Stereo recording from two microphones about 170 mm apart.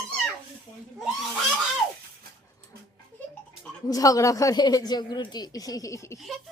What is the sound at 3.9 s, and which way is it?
A child's voice, 20° left (ahead or behind).